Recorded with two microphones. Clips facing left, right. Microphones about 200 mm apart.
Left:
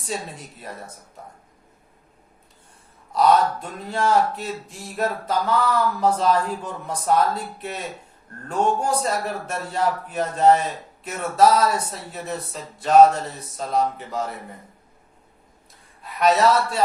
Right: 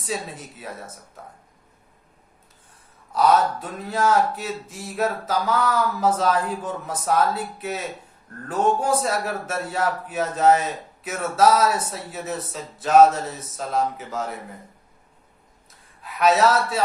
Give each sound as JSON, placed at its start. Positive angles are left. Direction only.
{"t": 0.0, "sound": "speech", "side_deg": 0}
{"t": 3.2, "sound": "speech", "side_deg": 0}
{"t": 16.0, "sound": "speech", "side_deg": 0}